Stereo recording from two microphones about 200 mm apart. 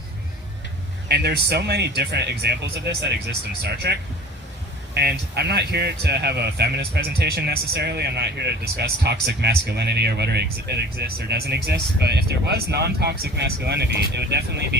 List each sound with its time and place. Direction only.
1.0 s a man's voice: 55° right (ahead or behind)
4.9 s a man's voice: 55° right (ahead or behind)